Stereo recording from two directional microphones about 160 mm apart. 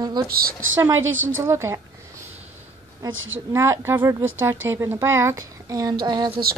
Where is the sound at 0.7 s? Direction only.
15° right (ahead or behind).